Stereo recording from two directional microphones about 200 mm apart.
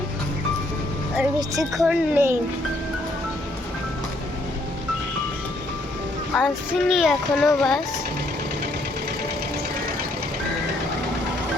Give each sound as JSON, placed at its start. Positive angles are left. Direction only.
{"t": 1.7, "sound": "a woman's voice", "side_deg": -5}
{"t": 6.3, "sound": "speech", "side_deg": 0}